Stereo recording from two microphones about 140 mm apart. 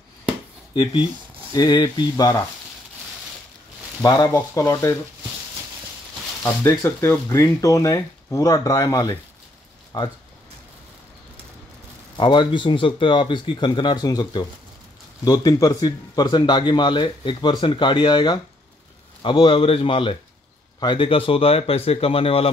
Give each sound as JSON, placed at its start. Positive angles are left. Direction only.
{"t": 1.5, "sound": "speech", "side_deg": 30}
{"t": 4.0, "sound": "speech", "side_deg": 25}
{"t": 6.4, "sound": "speech", "side_deg": 20}
{"t": 12.2, "sound": "speech", "side_deg": 35}